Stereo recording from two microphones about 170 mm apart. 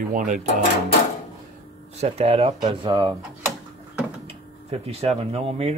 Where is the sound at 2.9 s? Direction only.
25° right (ahead or behind).